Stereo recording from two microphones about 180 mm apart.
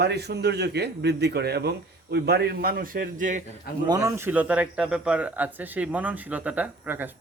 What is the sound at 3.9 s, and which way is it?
A man's voice, 20° right (ahead or behind).